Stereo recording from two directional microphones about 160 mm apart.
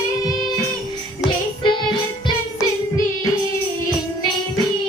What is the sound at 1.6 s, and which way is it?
Music, 30° left (ahead or behind).